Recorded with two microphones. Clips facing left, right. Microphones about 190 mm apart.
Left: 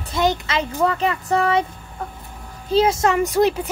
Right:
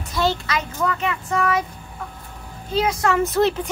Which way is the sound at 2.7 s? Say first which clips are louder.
Left 4 dB; 30° left (ahead or behind).